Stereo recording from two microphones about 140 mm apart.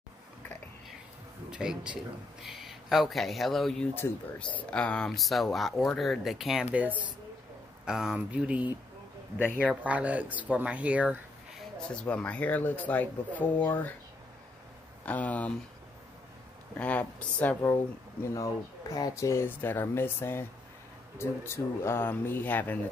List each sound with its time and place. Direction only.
1.5 s speech: 5° right (ahead or behind)
3.9 s speech: 15° left (ahead or behind); by 11.6 s 10° right (ahead or behind)
11.9 s speech: 5° left (ahead or behind)
15.0 s speech: 10° left (ahead or behind)
16.7 s speech: 10° left (ahead or behind)